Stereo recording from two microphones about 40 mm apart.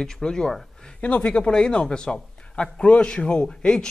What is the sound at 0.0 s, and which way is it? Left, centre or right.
Speech, centre.